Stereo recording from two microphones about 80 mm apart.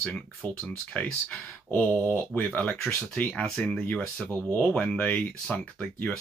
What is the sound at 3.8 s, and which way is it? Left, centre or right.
Speech, centre.